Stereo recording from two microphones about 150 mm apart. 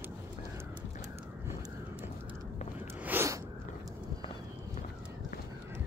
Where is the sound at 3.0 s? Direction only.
15° right (ahead or behind).